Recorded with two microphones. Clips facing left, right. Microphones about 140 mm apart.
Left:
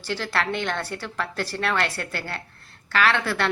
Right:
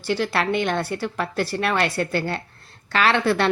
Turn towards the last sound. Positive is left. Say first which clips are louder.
# right 4 dB
turn(degrees=-20)  # may be behind; listen again after turning